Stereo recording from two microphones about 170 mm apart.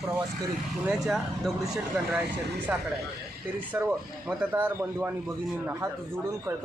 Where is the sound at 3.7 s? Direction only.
15° right (ahead or behind).